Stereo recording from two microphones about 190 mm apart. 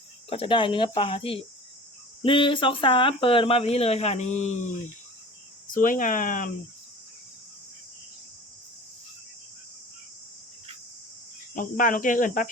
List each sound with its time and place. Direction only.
0.3 s speech: 30° left (ahead or behind)
5.7 s speech: 45° left (ahead or behind)
11.5 s speech: 45° left (ahead or behind)